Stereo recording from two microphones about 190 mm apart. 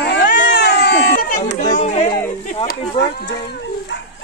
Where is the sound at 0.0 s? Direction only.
55° left (ahead or behind).